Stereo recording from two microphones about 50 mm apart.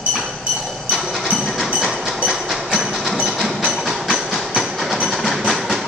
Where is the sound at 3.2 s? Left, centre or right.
Centre.